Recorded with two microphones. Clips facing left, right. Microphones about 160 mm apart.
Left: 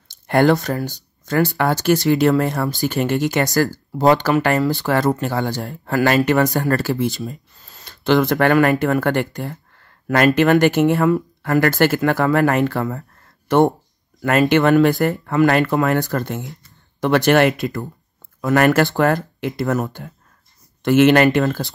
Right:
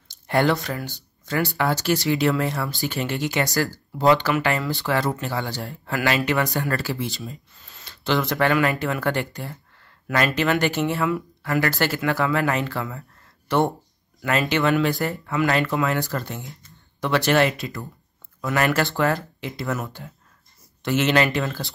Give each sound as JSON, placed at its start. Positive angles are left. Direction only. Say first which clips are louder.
{"t": 0.3, "sound": "speech", "louder": "left 6 dB", "side_deg": 45}